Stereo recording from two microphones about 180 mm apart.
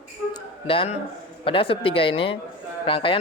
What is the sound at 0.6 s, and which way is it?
A man's voice, 30° left (ahead or behind).